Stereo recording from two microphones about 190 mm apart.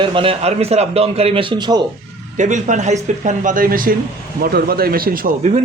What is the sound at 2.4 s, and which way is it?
Speech, 40° right (ahead or behind).